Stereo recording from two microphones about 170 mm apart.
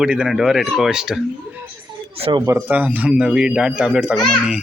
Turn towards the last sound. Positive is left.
turn(degrees=0)  # may be behind; listen again after turning